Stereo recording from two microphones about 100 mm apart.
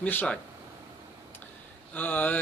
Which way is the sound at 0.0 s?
15° left (ahead or behind).